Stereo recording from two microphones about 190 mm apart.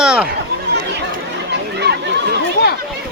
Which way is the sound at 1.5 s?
60° right (ahead or behind).